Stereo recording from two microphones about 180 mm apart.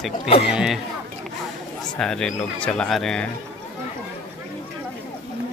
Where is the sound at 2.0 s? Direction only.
5° left (ahead or behind).